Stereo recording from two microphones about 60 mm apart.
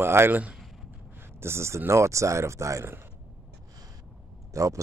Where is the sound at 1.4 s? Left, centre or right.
Right.